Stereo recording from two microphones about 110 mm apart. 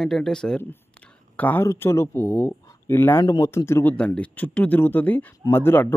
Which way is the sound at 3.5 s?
25° left (ahead or behind).